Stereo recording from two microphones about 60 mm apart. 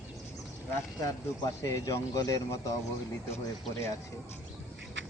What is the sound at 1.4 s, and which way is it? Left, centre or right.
Speech, left.